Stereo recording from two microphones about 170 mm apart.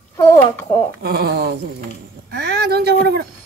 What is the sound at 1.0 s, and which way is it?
Speech, 70° right (ahead or behind).